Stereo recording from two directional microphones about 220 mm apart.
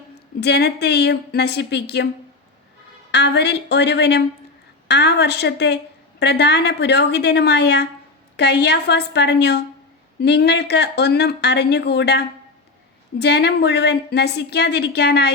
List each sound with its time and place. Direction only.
0.3 s a woman's voice: 50° left (ahead or behind)
3.1 s a woman's voice: 50° left (ahead or behind)